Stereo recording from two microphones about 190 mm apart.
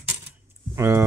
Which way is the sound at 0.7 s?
15° right (ahead or behind).